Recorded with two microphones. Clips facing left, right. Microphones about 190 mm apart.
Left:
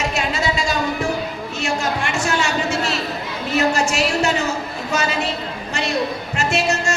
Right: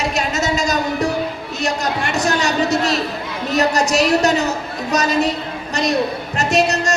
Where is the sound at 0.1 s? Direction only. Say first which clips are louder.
Right 2 dB; 40° right (ahead or behind).